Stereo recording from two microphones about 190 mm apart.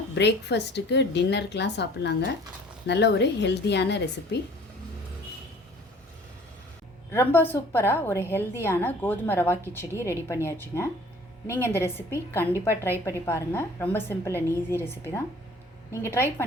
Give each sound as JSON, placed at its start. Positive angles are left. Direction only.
{"t": 0.1, "sound": "a woman's voice", "side_deg": 65}
{"t": 7.1, "sound": "a woman's voice", "side_deg": 10}